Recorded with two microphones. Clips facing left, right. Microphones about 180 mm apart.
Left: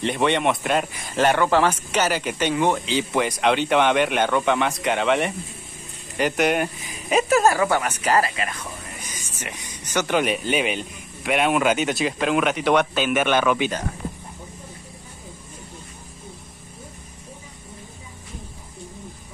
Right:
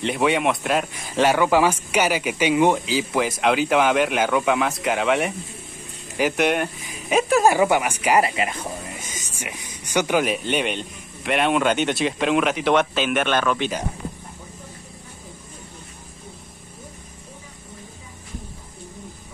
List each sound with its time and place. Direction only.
0.0 s a man's voice: 5° right (ahead or behind)
7.4 s speech: 15° right (ahead or behind)
8.2 s speech: 25° right (ahead or behind)
8.8 s a sound: 20° right (ahead or behind)
9.3 s speech: 10° right (ahead or behind)
10.2 s a man's voice: centre (ahead or behind)